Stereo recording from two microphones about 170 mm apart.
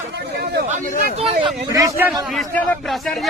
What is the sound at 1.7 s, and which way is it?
Speech, 20° right (ahead or behind).